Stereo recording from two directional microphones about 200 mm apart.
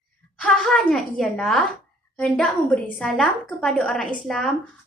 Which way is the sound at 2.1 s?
5° left (ahead or behind).